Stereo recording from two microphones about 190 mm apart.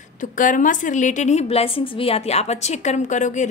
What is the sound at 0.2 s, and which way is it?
A woman's voice, 45° left (ahead or behind).